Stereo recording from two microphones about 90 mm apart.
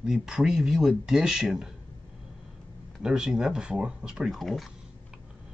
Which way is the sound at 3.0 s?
5° right (ahead or behind).